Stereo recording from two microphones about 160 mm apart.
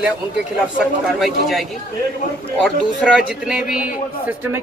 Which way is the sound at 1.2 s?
Centre (ahead or behind).